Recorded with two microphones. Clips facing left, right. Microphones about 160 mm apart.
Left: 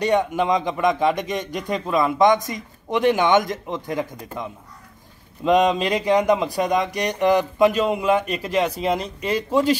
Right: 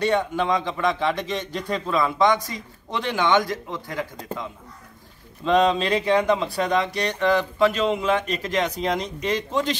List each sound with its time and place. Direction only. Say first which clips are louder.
0.0 s speech: left 2 dB; 15° left (ahead or behind)